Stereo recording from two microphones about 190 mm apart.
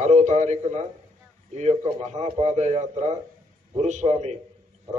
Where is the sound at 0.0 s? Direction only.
40° right (ahead or behind).